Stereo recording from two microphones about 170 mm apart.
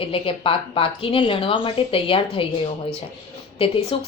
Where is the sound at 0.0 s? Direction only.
30° left (ahead or behind).